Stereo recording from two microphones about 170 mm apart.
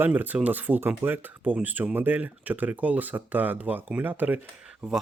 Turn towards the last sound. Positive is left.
turn(degrees=0)  # may be behind; listen again after turning